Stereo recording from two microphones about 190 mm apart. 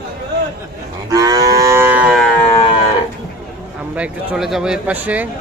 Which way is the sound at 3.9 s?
5° right (ahead or behind).